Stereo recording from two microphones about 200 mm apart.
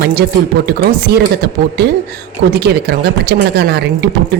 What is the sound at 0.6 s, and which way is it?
A woman's voice, 50° right (ahead or behind).